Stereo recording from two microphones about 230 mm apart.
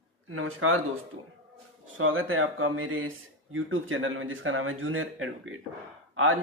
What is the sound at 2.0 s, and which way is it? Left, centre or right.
Speech, right.